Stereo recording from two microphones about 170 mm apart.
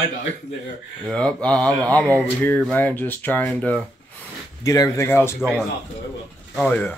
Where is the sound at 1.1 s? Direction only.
5° left (ahead or behind).